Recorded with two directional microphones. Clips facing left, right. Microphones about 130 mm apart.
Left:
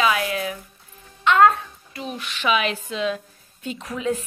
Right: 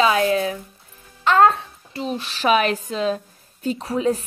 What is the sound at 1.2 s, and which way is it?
A woman's voice, 30° right (ahead or behind).